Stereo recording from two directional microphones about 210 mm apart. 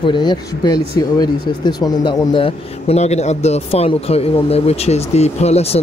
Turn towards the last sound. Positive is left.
turn(degrees=30)  # may be behind; listen again after turning